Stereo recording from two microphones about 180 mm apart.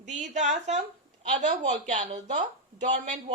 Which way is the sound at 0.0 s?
40° right (ahead or behind).